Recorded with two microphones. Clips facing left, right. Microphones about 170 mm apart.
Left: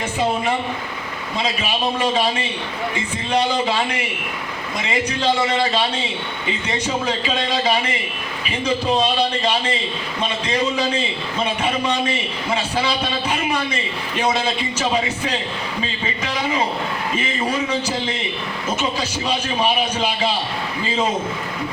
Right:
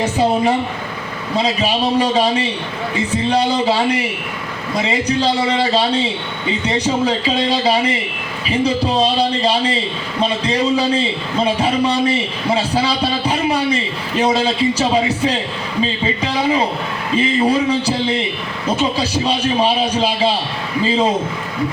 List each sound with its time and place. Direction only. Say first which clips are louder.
0.0 s a man's voice: right 6 dB; 35° right (ahead or behind)
6.7 s a man's voice: right 6 dB; 35° right (ahead or behind)
17.2 s a man's voice: right 9 dB; 35° right (ahead or behind)